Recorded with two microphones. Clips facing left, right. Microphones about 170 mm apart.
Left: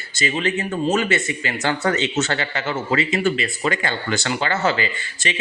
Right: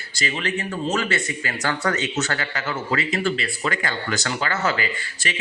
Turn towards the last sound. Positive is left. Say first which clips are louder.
# left 2 dB
turn(degrees=25)  # may be behind; listen again after turning